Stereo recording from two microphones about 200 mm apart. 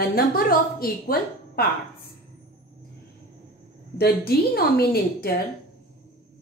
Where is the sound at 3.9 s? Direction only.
50° left (ahead or behind).